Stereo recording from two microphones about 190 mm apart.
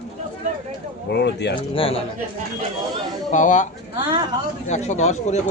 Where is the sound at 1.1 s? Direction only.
60° left (ahead or behind).